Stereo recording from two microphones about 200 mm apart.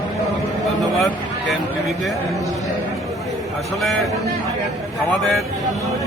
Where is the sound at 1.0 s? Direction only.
Centre (ahead or behind).